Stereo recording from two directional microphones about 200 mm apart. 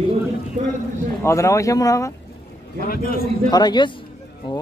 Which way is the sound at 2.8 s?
45° left (ahead or behind).